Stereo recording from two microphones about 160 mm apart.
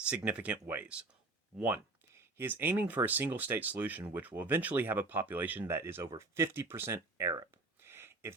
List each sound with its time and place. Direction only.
0.3 s speech: 10° right (ahead or behind)